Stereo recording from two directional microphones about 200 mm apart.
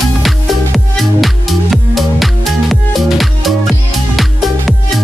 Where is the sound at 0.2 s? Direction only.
Centre (ahead or behind).